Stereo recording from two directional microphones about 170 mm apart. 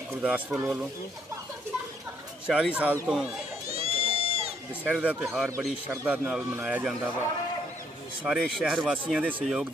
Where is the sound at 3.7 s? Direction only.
35° right (ahead or behind).